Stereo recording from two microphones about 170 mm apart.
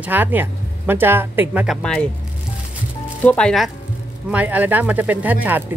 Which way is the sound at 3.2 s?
10° left (ahead or behind).